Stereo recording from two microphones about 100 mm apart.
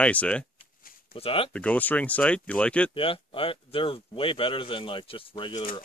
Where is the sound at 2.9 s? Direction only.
65° left (ahead or behind).